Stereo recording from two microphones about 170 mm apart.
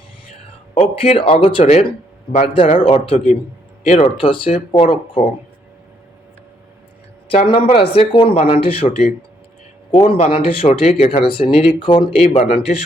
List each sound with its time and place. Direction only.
0.7 s speech: 35° left (ahead or behind)
4.2 s speech: 30° left (ahead or behind)
7.3 s speech: 35° left (ahead or behind)